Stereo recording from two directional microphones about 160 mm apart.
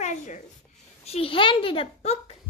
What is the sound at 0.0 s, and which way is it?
Writing, 50° left (ahead or behind).